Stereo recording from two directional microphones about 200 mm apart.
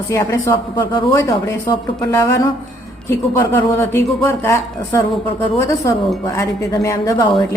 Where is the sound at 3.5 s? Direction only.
15° left (ahead or behind).